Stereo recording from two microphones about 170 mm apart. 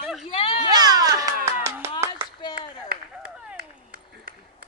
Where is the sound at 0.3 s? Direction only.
35° left (ahead or behind).